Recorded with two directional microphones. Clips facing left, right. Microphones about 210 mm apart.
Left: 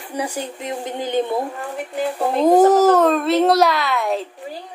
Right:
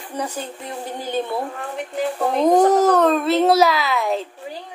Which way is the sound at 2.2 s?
5° left (ahead or behind).